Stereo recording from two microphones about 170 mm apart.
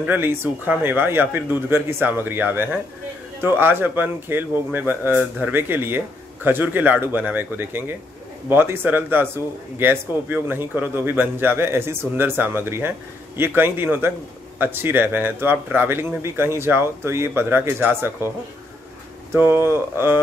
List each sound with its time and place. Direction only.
0.0 s speech: 10° right (ahead or behind)
19.3 s speech: 15° right (ahead or behind)